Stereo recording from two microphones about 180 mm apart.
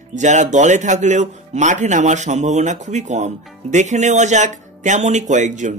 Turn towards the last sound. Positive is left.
turn(degrees=-45)  # may be behind; listen again after turning